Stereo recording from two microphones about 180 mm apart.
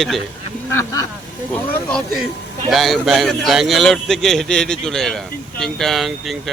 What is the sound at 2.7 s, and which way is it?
A man's voice, centre (ahead or behind).